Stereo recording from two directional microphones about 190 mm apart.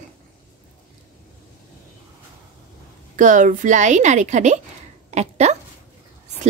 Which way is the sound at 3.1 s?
40° right (ahead or behind).